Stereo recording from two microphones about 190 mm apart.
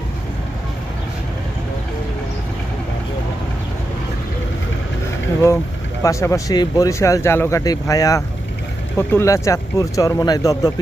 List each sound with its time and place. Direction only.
6.0 s speech: 15° left (ahead or behind)